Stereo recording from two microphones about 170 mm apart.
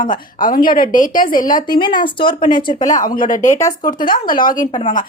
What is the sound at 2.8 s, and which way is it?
A woman's voice, 50° left (ahead or behind).